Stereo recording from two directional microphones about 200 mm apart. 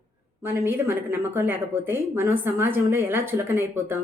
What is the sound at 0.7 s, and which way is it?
A woman's voice, 10° right (ahead or behind).